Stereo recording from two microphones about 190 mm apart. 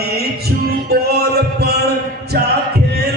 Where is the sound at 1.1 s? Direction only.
55° right (ahead or behind).